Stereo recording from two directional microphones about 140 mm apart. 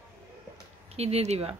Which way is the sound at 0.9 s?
50° right (ahead or behind).